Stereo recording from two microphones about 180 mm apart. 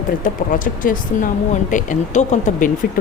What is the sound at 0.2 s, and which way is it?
A woman's voice, 50° left (ahead or behind).